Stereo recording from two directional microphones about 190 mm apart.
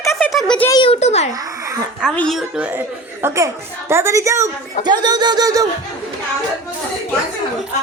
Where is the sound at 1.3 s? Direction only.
15° right (ahead or behind).